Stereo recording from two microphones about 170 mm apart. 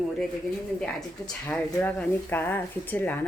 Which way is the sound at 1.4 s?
10° left (ahead or behind).